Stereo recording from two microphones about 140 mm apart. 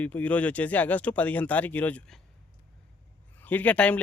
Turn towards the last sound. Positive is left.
turn(degrees=10)  # may be behind; listen again after turning